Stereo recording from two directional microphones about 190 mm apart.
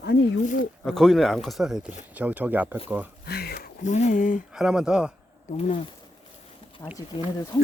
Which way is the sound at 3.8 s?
40° left (ahead or behind).